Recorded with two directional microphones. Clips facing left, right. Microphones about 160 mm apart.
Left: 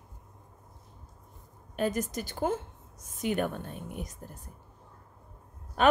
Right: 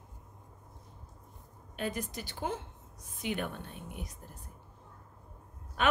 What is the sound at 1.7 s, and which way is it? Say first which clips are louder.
Speech: left 6 dB; 45° left (ahead or behind).